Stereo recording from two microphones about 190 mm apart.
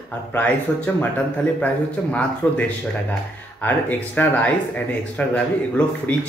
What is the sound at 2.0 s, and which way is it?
Speech, 10° left (ahead or behind).